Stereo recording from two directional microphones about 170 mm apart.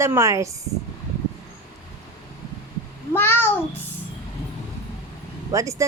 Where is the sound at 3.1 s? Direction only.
10° left (ahead or behind).